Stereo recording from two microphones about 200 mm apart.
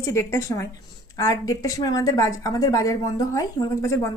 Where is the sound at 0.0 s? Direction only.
15° left (ahead or behind).